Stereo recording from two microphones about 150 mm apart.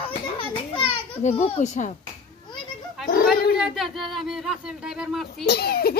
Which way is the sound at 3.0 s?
80° left.